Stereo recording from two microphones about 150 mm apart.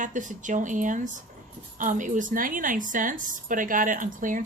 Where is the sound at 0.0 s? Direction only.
60° right (ahead or behind).